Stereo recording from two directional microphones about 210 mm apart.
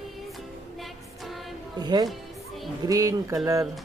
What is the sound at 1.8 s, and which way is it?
Speech, 20° right (ahead or behind).